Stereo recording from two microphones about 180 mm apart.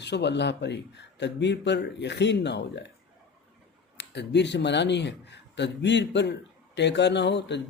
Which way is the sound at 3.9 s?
70° left (ahead or behind).